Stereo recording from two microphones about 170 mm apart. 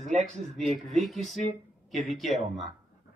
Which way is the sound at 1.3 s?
45° right (ahead or behind).